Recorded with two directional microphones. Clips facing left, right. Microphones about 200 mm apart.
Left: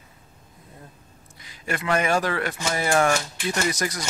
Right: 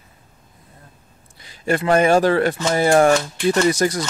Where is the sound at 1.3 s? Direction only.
30° right (ahead or behind).